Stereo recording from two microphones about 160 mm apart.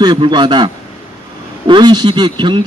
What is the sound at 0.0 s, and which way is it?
Speech, 30° right (ahead or behind).